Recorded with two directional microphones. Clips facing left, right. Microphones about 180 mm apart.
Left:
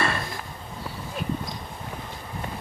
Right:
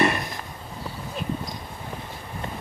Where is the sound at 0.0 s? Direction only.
20° right (ahead or behind).